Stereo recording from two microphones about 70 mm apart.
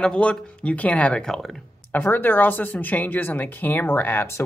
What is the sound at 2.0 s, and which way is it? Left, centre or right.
Speech, left.